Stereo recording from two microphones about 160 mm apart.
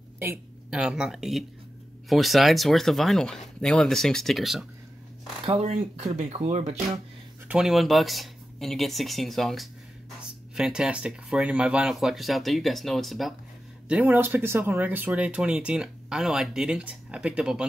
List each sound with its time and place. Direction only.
0.2 s speech: 10° right (ahead or behind)
5.4 s speech: 40° right (ahead or behind)
7.4 s speech: 5° right (ahead or behind)